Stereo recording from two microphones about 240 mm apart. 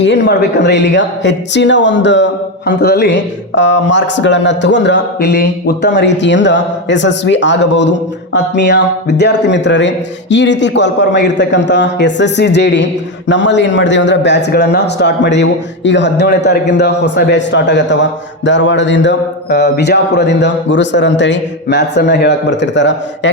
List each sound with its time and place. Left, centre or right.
0.0 s a man's voice: left